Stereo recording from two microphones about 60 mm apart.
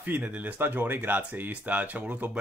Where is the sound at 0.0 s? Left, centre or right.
Right.